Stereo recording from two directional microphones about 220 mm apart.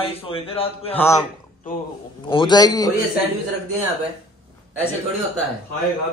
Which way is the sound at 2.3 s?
20° left (ahead or behind).